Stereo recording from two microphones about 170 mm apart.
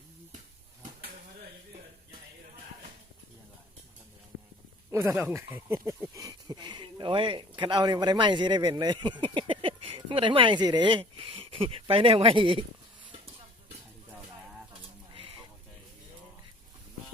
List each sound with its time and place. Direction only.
4.9 s speech: 15° right (ahead or behind)